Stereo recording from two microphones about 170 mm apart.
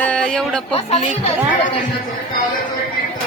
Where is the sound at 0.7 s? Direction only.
35° left (ahead or behind).